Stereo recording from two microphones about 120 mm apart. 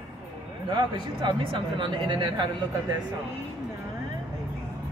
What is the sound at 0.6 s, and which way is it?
Speech, 40° right (ahead or behind).